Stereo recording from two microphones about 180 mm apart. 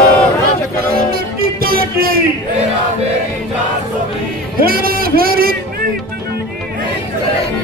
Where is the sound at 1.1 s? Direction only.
55° right (ahead or behind).